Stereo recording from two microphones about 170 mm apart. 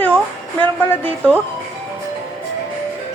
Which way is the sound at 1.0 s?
10° left (ahead or behind).